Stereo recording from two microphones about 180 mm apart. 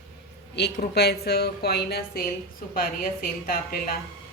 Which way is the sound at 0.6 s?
70° left (ahead or behind).